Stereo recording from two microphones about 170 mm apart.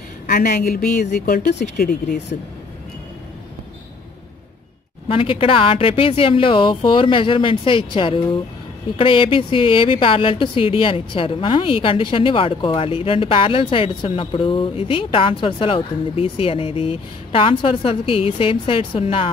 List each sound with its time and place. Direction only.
0.3 s speech: 60° left (ahead or behind)
0.9 s speech: 45° left (ahead or behind)
1.2 s speech: 60° left (ahead or behind)
5.0 s speech: 35° left (ahead or behind)